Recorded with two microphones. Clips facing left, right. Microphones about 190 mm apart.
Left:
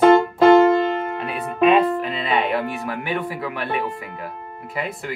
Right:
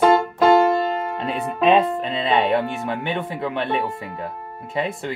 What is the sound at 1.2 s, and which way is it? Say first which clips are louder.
Speech: left 2 dB; 25° right (ahead or behind).